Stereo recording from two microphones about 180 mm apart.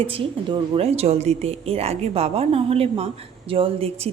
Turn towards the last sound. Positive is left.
turn(degrees=-30)  # may be behind; listen again after turning